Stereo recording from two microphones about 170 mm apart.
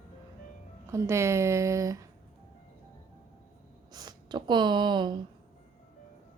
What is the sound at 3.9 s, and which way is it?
Speech, 25° right (ahead or behind).